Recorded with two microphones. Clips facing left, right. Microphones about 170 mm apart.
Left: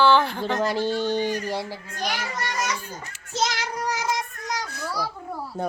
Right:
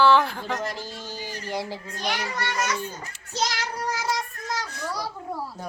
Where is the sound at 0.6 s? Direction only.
75° left (ahead or behind).